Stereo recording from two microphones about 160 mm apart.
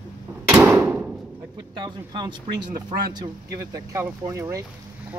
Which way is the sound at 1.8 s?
25° right (ahead or behind).